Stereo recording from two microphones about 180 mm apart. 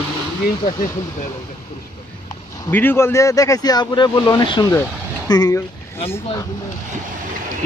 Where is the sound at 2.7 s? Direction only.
10° left (ahead or behind).